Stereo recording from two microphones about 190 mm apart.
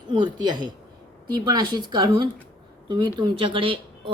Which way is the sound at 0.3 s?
20° right (ahead or behind).